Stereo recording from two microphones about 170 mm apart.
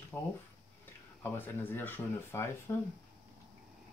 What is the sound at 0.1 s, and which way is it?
Speech, 10° left (ahead or behind).